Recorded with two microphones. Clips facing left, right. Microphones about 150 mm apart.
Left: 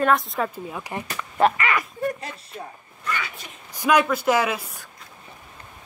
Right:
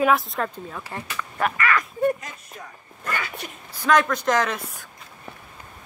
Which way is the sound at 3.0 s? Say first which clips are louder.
Even; 45° right (ahead or behind).